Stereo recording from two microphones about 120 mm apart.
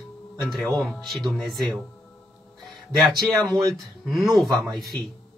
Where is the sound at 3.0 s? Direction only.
Centre (ahead or behind).